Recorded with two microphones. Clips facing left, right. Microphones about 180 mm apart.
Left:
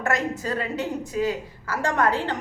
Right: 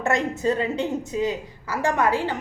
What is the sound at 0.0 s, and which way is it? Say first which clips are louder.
A woman's voice: right 3 dB; 25° right (ahead or behind).